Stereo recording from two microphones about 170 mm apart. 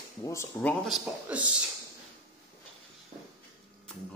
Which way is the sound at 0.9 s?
5° right (ahead or behind).